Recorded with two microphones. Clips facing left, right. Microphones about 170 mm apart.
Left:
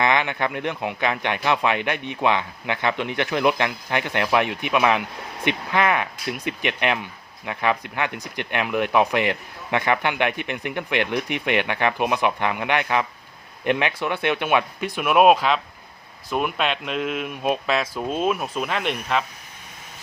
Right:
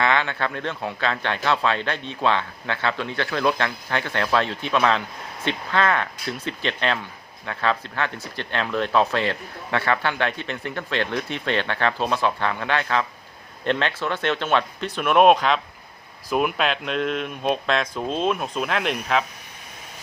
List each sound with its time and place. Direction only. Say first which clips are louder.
0.0 s speech: left 1 dB; 15° left (ahead or behind); by 19.2 s centre (ahead or behind)